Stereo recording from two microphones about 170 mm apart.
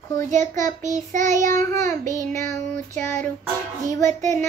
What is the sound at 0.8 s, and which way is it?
Child singing, 45° right (ahead or behind).